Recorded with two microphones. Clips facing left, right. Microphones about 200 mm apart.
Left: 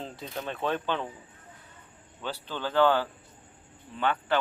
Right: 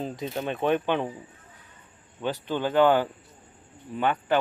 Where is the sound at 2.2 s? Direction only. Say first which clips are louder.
Right 7 dB; 15° right (ahead or behind).